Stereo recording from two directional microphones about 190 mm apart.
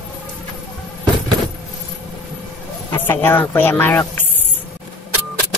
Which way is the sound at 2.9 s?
10° left (ahead or behind).